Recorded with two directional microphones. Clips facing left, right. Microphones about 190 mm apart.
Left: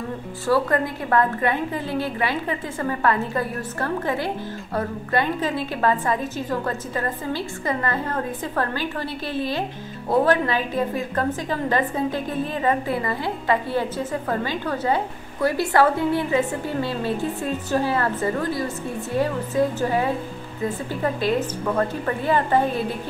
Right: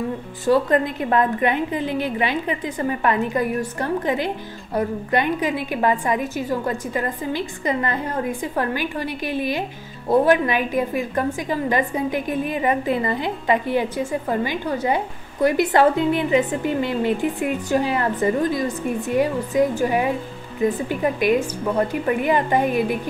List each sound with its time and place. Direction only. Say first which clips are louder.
0.5 s a woman's voice: right 3 dB; 20° right (ahead or behind)